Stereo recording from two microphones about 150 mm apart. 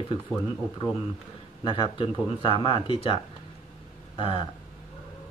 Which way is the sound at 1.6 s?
35° left (ahead or behind).